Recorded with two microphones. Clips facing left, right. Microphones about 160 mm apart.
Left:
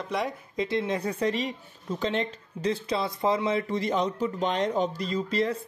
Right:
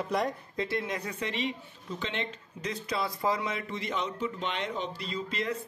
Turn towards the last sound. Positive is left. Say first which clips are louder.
# left 6 dB
turn(degrees=35)  # may be behind; listen again after turning